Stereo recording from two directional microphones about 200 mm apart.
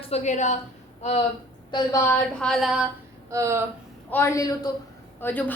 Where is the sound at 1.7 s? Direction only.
15° left (ahead or behind); by 2.9 s centre (ahead or behind).